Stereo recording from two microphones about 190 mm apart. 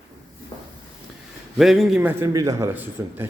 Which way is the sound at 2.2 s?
20° right (ahead or behind).